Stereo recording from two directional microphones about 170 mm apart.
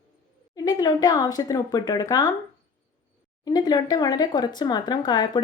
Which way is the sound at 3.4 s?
25° left (ahead or behind).